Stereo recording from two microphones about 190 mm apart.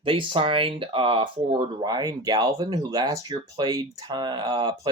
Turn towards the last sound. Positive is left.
turn(degrees=-20)  # may be behind; listen again after turning